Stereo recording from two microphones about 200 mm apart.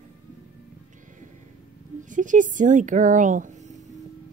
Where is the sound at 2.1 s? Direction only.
40° right (ahead or behind).